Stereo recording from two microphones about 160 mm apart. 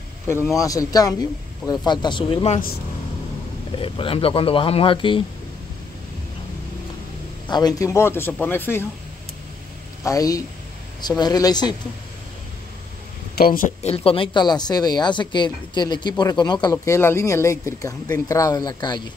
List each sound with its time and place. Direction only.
0.6 s speech: 20° left (ahead or behind); by 2.6 s 35° left (ahead or behind)
3.7 s speech: 35° left (ahead or behind)
7.5 s speech: 20° left (ahead or behind)
10.0 s speech: 20° left (ahead or behind)
13.4 s speech: 60° left (ahead or behind)
13.8 s speech: 35° left (ahead or behind)